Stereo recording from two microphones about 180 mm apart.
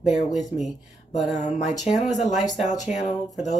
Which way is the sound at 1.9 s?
40° left (ahead or behind).